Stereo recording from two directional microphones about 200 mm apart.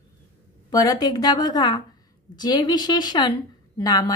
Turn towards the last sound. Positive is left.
turn(degrees=20)  # may be behind; listen again after turning